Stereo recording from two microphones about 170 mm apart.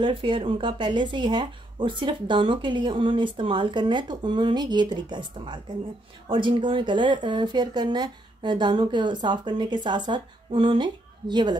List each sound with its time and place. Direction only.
0.0 s speech: 30° right (ahead or behind)